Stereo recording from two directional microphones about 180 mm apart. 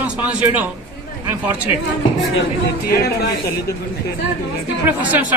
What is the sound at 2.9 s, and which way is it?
Speech, 60° left (ahead or behind).